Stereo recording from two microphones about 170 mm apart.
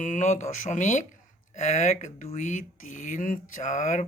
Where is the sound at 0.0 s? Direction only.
45° left (ahead or behind).